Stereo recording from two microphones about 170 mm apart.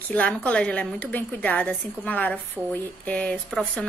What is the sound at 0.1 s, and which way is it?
A woman's voice, 10° left (ahead or behind).